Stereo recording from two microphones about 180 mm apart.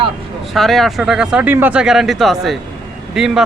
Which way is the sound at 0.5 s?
Centre (ahead or behind).